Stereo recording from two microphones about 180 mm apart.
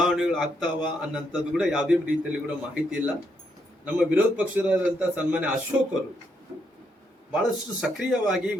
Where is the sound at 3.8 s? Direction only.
5° right (ahead or behind).